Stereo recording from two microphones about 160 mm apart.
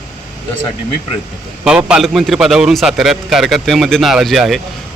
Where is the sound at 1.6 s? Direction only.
5° right (ahead or behind).